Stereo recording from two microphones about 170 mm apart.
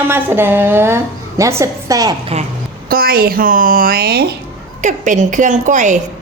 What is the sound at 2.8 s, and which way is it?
A woman's voice, 60° right (ahead or behind).